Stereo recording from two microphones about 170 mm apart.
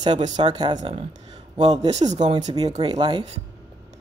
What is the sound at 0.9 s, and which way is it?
Speech, 35° right (ahead or behind).